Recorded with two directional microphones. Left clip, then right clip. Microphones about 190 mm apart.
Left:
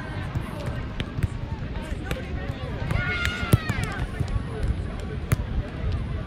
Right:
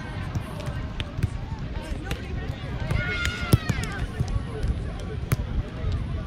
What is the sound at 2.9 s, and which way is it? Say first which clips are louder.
Run: left 1 dB; 40° left (ahead or behind).